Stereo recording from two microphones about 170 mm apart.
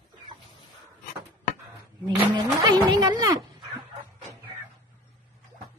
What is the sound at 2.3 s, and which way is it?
Speech, 25° right (ahead or behind).